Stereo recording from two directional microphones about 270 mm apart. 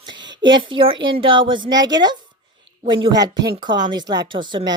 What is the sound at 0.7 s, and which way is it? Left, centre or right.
Speech, centre.